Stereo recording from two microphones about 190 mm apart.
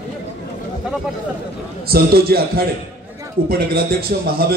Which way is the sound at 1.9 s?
55° right (ahead or behind).